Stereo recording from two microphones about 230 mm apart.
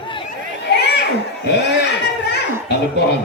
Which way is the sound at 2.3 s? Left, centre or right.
Left.